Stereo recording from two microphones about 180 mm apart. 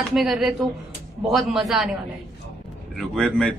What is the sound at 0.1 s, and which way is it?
A woman's voice, centre (ahead or behind).